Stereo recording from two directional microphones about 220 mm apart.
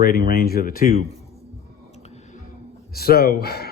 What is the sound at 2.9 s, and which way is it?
Speech, 45° left (ahead or behind).